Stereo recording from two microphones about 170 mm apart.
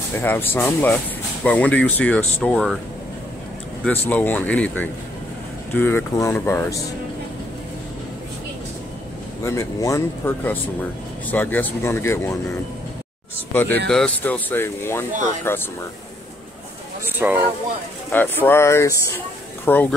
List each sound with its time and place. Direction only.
0.1 s speech: 10° left (ahead or behind)
3.8 s speech: 10° left (ahead or behind)
9.6 s speech: 20° left (ahead or behind)
17.2 s speech: 10° right (ahead or behind)
18.1 s speech: 10° left (ahead or behind)